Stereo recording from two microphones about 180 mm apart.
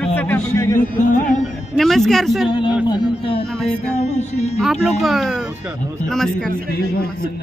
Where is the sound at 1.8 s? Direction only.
Centre (ahead or behind).